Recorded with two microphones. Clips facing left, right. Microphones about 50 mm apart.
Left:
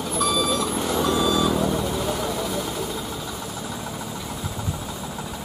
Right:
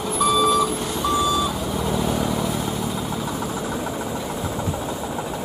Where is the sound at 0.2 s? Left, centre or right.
Centre.